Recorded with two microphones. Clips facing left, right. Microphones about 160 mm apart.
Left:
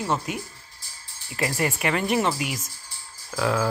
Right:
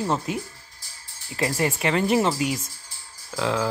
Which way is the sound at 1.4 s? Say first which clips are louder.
Right 1 dB; 25° right (ahead or behind).